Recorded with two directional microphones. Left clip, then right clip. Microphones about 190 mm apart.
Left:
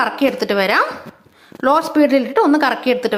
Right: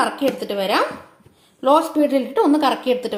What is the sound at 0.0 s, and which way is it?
Speech, 20° left (ahead or behind).